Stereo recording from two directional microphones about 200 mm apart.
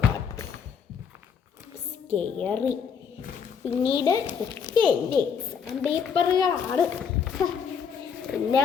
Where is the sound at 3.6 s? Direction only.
25° left (ahead or behind).